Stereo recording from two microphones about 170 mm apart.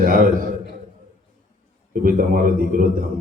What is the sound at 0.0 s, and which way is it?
Speech, 55° right (ahead or behind).